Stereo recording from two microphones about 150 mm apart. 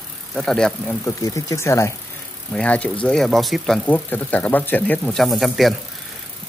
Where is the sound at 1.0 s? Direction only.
20° left (ahead or behind); by 3.7 s centre (ahead or behind).